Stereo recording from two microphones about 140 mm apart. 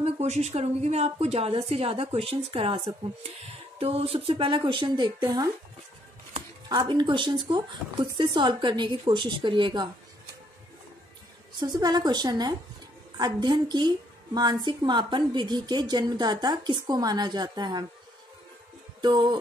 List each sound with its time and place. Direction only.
0.0 s a woman's voice: 50° right (ahead or behind); by 5.5 s 30° right (ahead or behind)
6.7 s a woman's voice: 30° right (ahead or behind)
11.6 s a woman's voice: 30° right (ahead or behind)
18.9 s a sound: 30° right (ahead or behind)